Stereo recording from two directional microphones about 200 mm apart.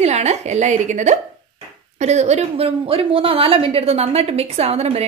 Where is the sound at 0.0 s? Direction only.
35° right (ahead or behind).